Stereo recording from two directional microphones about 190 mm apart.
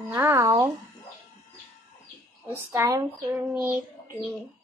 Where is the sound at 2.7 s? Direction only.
20° right (ahead or behind).